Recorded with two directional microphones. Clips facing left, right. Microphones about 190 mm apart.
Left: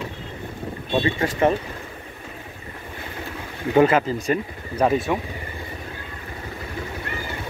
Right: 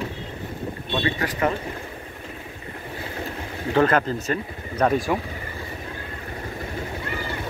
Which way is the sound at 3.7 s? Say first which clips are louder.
Left 3 dB; 10° left (ahead or behind).